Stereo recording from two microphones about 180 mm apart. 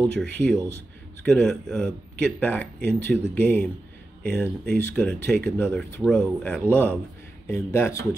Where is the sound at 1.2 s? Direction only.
5° left (ahead or behind).